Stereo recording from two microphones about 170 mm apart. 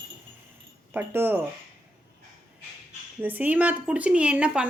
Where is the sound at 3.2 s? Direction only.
10° right (ahead or behind).